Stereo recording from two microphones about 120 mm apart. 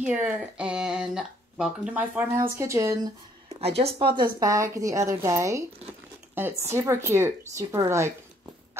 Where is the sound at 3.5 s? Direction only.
60° right (ahead or behind).